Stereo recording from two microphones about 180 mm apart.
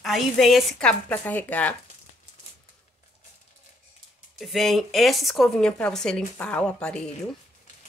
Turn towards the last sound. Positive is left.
turn(degrees=5)  # may be behind; listen again after turning